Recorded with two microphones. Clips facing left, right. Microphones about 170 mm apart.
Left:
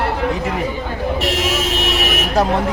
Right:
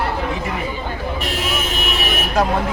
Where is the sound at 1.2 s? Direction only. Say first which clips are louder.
Left 5 dB; 90° left.